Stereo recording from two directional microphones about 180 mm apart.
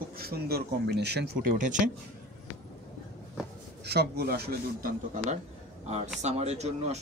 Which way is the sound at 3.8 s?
65° right (ahead or behind).